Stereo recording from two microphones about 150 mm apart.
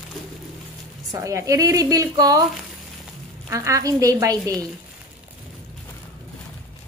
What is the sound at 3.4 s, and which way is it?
A woman's voice, 20° right (ahead or behind).